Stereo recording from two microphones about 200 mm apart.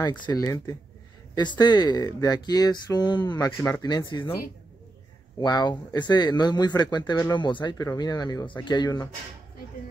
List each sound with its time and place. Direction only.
0.0 s speech: 20° left (ahead or behind)
5.4 s speech: 20° left (ahead or behind)